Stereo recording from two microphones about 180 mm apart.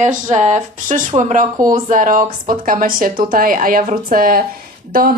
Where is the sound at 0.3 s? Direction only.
40° right (ahead or behind).